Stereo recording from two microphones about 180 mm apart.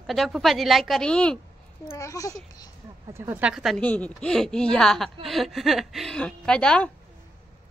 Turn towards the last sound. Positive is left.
turn(degrees=5)  # may be behind; listen again after turning